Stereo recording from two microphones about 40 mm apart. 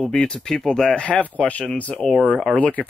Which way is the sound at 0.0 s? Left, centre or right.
Centre.